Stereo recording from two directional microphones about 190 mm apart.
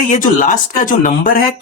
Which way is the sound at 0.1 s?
45° left (ahead or behind).